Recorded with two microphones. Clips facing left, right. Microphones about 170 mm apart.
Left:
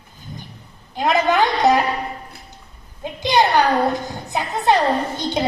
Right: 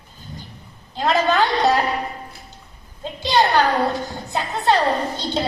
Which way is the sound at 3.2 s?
15° left (ahead or behind).